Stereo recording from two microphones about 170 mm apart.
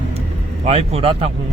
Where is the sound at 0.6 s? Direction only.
35° right (ahead or behind).